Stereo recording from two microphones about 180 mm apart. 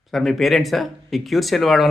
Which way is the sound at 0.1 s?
Centre (ahead or behind).